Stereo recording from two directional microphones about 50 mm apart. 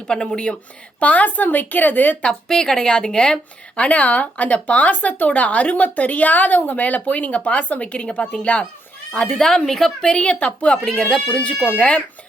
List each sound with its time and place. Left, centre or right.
0.1 s a woman's voice: centre
0.9 s speech: left
2.2 s a woman's voice: centre
3.8 s a woman's voice: left; by 9.9 s centre
10.0 s speech: left
10.8 s a woman's voice: centre
11.3 s speech: left